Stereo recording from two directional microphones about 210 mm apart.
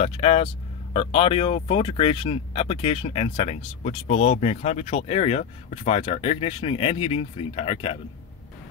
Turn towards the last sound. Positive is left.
turn(degrees=25)  # may be behind; listen again after turning